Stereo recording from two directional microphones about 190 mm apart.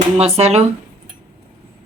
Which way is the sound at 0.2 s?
35° right (ahead or behind).